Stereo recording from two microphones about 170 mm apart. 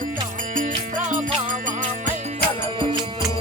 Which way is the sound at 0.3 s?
50° right (ahead or behind).